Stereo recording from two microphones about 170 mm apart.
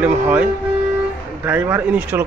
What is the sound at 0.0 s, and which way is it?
A man's voice, 10° right (ahead or behind).